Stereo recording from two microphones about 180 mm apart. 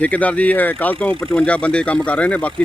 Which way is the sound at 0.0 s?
10° left (ahead or behind).